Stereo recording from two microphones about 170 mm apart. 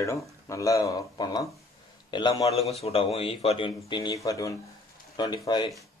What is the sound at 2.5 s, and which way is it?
Speech, centre (ahead or behind).